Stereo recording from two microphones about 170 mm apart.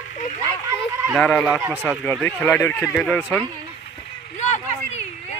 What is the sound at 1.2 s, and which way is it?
Speech, 5° left (ahead or behind).